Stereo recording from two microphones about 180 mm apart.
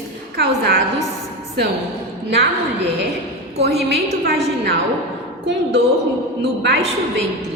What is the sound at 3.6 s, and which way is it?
Speech, 65° right (ahead or behind).